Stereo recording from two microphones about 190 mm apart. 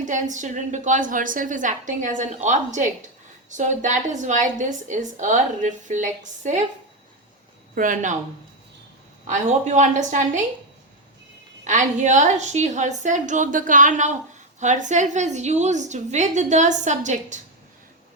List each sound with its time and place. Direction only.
0.1 s a woman's voice: 40° right (ahead or behind)
7.8 s speech: 45° right (ahead or behind)
9.2 s a woman's voice: 40° right (ahead or behind)
11.6 s a woman's voice: 40° right (ahead or behind)